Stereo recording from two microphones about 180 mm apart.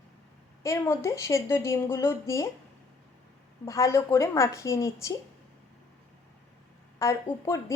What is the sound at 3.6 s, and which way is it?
A woman's voice, 15° left (ahead or behind).